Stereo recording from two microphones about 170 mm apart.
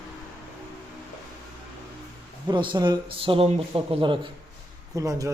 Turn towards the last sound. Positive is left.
turn(degrees=-20)  # may be behind; listen again after turning